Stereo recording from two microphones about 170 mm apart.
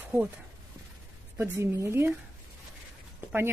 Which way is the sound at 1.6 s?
15° right (ahead or behind).